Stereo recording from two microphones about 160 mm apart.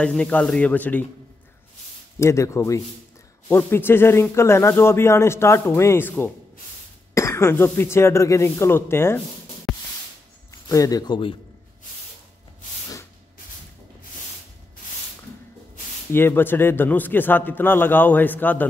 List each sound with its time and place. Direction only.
0.0 s speech: 5° left (ahead or behind)
2.1 s speech: 20° left (ahead or behind)
9.7 s music: centre (ahead or behind)
10.7 s speech: 20° left (ahead or behind)
16.1 s speech: 15° left (ahead or behind)